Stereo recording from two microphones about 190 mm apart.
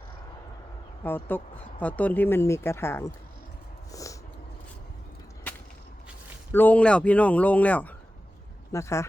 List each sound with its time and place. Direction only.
1.0 s speech: 10° left (ahead or behind)
3.9 s a sound: 15° left (ahead or behind)
6.5 s speech: 10° left (ahead or behind)